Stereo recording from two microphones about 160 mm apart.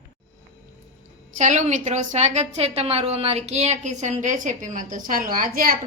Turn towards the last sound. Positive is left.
turn(degrees=-60)  # may be behind; listen again after turning